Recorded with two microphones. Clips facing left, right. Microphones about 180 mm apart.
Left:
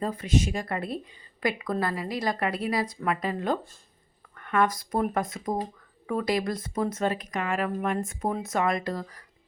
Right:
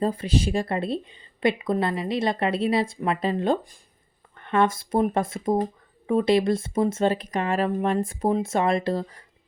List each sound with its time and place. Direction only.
0.0 s speech: 30° right (ahead or behind)